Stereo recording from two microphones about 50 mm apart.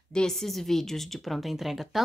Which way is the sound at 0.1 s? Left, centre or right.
Centre.